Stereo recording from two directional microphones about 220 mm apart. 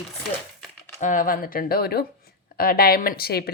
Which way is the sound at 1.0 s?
35° left (ahead or behind).